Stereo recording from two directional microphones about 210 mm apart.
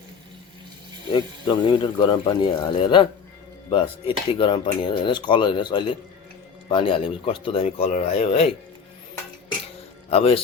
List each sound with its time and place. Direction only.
1.1 s cutlery: 20° left (ahead or behind)
10.1 s cutlery: 30° left (ahead or behind)